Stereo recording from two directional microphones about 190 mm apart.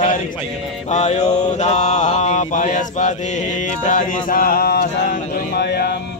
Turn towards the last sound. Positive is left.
turn(degrees=60)  # may be behind; listen again after turning